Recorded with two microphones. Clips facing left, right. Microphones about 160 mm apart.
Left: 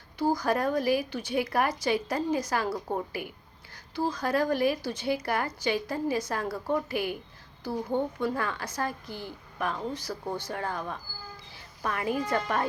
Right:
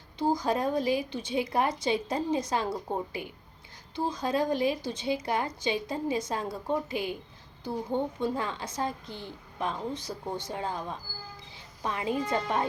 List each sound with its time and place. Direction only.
0.2 s a woman's voice: 25° right (ahead or behind)